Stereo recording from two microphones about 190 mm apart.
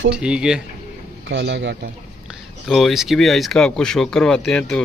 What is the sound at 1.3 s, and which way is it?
Speech, 65° right (ahead or behind).